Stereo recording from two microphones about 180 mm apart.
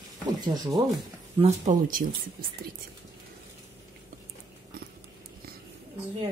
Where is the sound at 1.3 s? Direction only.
40° right (ahead or behind).